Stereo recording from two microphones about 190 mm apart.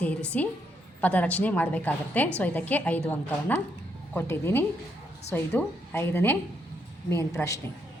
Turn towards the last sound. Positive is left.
turn(degrees=15)  # may be behind; listen again after turning